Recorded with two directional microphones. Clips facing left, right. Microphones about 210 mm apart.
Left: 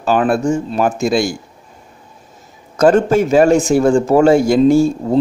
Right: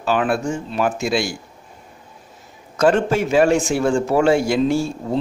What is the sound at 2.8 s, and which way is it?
A man's voice, 45° left (ahead or behind).